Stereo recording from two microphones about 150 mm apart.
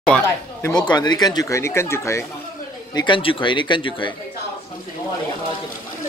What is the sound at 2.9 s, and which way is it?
Speech, 30° left (ahead or behind).